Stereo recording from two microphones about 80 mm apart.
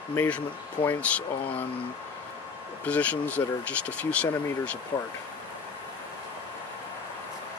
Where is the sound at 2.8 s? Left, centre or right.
Centre.